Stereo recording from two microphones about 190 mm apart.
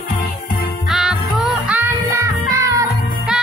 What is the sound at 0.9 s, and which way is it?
Music, 5° right (ahead or behind).